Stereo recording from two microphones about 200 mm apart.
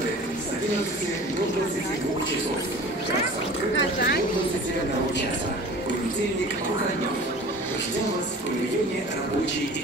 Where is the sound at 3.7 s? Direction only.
60° left (ahead or behind).